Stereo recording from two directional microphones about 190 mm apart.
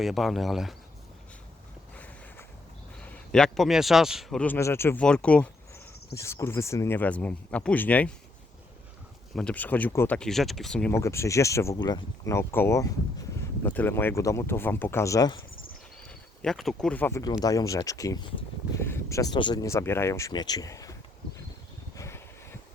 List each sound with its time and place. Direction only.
0.0 s a man's voice: centre (ahead or behind)
3.0 s a man's voice: 5° left (ahead or behind)
9.3 s a man's voice: 5° left (ahead or behind)
10.9 s speech: 15° left (ahead or behind)
16.0 s speech: 5° left (ahead or behind)
21.9 s a sound: 15° left (ahead or behind)